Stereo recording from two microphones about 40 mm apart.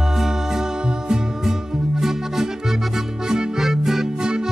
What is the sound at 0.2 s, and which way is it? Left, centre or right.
Music, centre.